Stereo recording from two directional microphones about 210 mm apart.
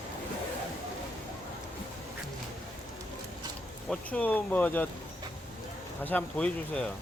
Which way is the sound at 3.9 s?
5° left (ahead or behind).